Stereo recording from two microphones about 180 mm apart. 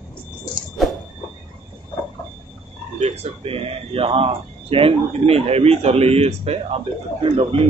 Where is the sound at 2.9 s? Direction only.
35° right (ahead or behind).